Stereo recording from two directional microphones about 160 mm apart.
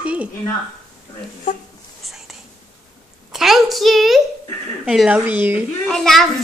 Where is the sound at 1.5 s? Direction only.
55° left (ahead or behind).